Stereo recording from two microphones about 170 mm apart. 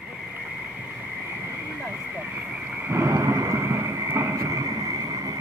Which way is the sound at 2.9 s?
15° right (ahead or behind).